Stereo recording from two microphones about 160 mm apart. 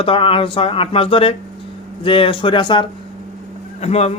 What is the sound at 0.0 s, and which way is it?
Speech, 35° left (ahead or behind).